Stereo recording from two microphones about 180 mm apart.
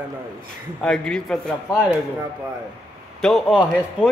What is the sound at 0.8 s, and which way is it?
Speech, 5° left (ahead or behind).